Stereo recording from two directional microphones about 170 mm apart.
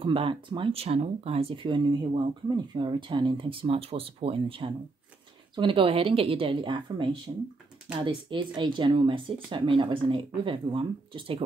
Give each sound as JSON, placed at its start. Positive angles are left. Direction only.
{"t": 0.0, "sound": "speech", "side_deg": -30}